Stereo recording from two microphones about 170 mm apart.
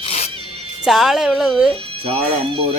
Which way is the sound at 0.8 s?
5° right (ahead or behind).